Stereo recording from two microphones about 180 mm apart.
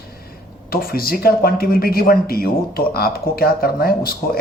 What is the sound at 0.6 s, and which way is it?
Speech, 55° left (ahead or behind).